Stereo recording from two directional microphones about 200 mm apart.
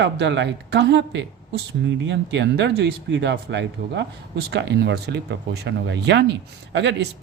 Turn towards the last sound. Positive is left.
turn(degrees=-60)  # may be behind; listen again after turning